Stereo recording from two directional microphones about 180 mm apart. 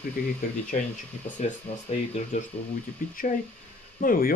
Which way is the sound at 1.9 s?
40° left (ahead or behind).